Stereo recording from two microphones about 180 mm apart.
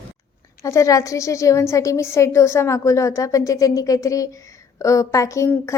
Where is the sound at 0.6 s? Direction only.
15° left (ahead or behind).